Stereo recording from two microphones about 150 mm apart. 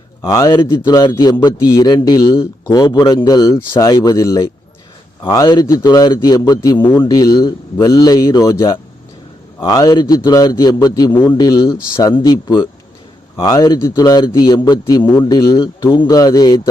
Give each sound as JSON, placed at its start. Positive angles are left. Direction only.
{"t": 0.2, "sound": "a man's voice", "side_deg": 20}
{"t": 6.7, "sound": "speech", "side_deg": 15}
{"t": 7.0, "sound": "a man's voice", "side_deg": 25}